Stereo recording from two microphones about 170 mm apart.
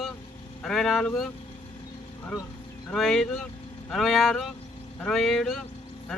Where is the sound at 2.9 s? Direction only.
Centre (ahead or behind).